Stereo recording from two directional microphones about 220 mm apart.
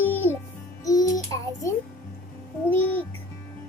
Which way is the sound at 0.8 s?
15° left (ahead or behind).